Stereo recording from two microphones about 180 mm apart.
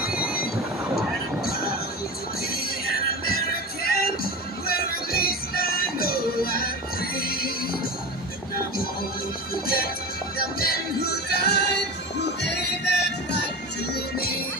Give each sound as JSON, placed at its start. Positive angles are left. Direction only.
{"t": 0.1, "sound": "a sound", "side_deg": -5}
{"t": 2.5, "sound": "music", "side_deg": 55}
{"t": 10.3, "sound": "music", "side_deg": 55}
{"t": 13.9, "sound": "music", "side_deg": 60}